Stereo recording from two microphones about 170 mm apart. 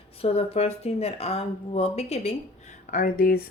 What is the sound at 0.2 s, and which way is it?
Speech, 35° left (ahead or behind).